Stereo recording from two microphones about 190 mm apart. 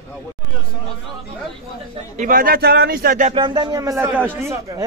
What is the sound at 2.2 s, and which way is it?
Speech, 45° right (ahead or behind).